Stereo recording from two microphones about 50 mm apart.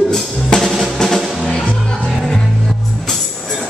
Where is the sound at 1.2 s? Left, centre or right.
Centre.